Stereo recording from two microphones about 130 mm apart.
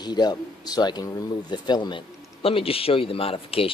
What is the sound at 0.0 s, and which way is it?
Speech, 35° left (ahead or behind).